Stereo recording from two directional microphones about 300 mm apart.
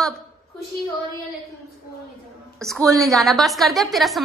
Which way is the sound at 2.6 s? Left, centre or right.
Centre.